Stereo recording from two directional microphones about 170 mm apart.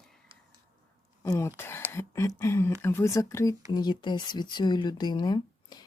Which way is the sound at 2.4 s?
15° left (ahead or behind).